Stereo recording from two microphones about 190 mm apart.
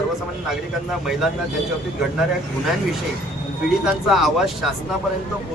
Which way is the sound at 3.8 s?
Centre (ahead or behind).